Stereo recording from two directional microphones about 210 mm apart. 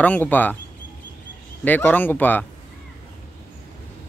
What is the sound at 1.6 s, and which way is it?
Speech, 10° left (ahead or behind).